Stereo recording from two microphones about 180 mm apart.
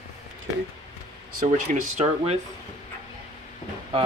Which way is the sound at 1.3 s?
45° right (ahead or behind).